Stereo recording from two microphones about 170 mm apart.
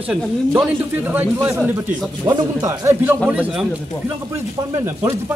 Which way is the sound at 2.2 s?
25° right (ahead or behind).